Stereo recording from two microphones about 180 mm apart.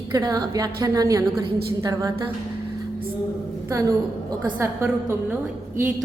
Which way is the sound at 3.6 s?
15° right (ahead or behind).